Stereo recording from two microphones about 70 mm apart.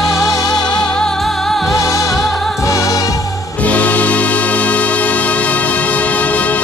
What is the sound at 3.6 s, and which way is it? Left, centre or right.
Music, left.